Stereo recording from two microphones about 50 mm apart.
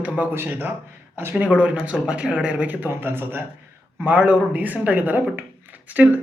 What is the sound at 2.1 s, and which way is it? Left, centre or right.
Speech, right.